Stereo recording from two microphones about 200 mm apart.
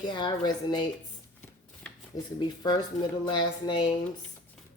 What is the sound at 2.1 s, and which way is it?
Speech, 40° left (ahead or behind).